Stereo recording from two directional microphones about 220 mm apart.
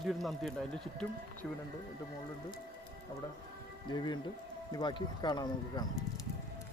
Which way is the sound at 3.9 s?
20° left (ahead or behind).